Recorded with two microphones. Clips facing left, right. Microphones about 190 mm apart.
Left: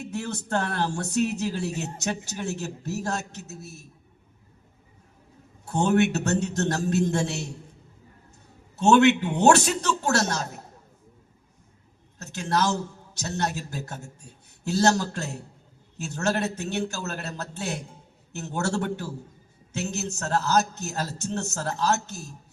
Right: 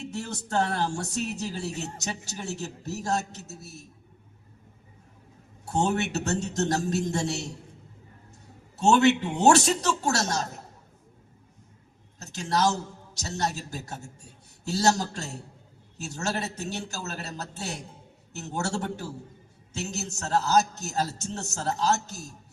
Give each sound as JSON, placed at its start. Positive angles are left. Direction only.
{"t": 0.0, "sound": "a man's voice", "side_deg": 60}
{"t": 5.7, "sound": "a man's voice", "side_deg": 55}
{"t": 8.8, "sound": "a man's voice", "side_deg": 60}
{"t": 12.2, "sound": "a sound", "side_deg": 60}
{"t": 13.1, "sound": "a man's voice", "side_deg": 60}
{"t": 19.7, "sound": "a man's voice", "side_deg": 60}